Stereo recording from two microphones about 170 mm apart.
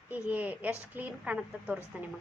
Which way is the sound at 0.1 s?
10° right (ahead or behind).